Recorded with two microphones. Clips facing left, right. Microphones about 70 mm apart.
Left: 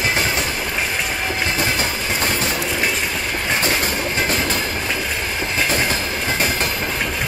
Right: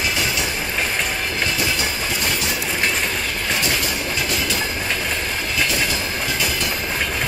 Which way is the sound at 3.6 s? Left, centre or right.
Left.